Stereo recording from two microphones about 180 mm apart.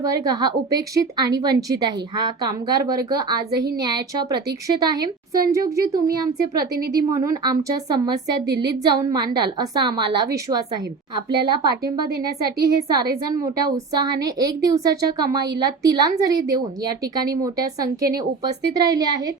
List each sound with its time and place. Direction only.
0.0 s a woman's voice: 20° right (ahead or behind)
7.1 s a woman's voice: 20° right (ahead or behind)